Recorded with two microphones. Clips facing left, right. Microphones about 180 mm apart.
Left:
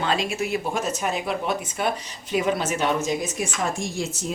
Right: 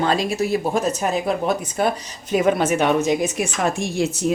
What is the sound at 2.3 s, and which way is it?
A woman's voice, 50° right (ahead or behind).